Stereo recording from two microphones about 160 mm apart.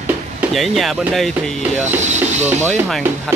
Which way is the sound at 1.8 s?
45° right (ahead or behind).